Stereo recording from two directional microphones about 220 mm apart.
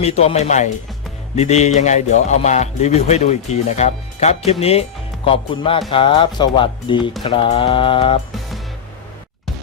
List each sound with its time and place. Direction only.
0.0 s speech: 30° left (ahead or behind)
8.3 s music: centre (ahead or behind)